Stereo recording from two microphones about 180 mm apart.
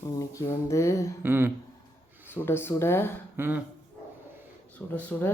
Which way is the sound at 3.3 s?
10° right (ahead or behind).